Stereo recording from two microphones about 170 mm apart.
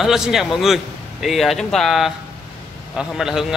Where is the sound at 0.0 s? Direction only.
Centre (ahead or behind).